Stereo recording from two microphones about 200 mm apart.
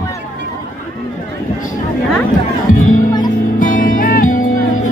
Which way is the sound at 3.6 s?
40° left (ahead or behind).